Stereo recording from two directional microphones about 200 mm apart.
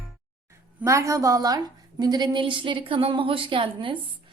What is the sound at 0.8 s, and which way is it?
A woman's voice, 15° right (ahead or behind).